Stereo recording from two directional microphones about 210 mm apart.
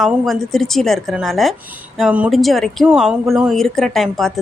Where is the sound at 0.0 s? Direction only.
Centre (ahead or behind).